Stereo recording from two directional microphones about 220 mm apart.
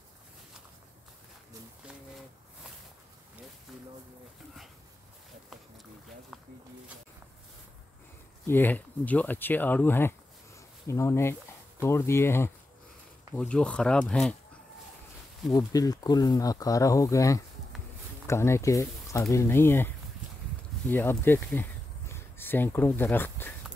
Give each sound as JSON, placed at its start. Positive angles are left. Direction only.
{"t": 8.5, "sound": "speech", "side_deg": 10}
{"t": 15.5, "sound": "speech", "side_deg": 15}